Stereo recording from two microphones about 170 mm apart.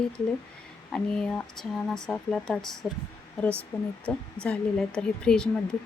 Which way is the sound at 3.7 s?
20° left (ahead or behind).